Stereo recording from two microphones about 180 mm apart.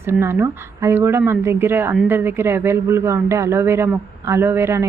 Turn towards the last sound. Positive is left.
turn(degrees=-15)  # may be behind; listen again after turning